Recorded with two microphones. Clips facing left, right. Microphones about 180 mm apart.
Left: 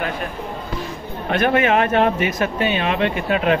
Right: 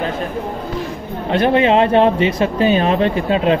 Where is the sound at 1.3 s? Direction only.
30° right (ahead or behind).